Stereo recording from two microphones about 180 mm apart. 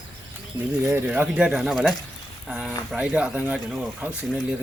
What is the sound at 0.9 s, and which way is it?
Speech, 5° right (ahead or behind).